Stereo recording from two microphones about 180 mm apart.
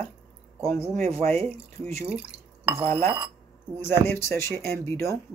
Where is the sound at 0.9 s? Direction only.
45° right (ahead or behind).